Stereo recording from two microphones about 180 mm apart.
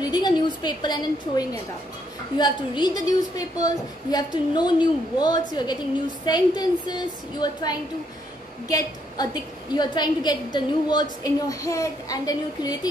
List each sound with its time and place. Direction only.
0.1 s a woman's voice: 20° left (ahead or behind)